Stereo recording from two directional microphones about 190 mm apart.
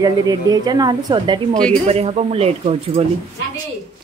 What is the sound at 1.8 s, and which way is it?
Speech, 35° right (ahead or behind).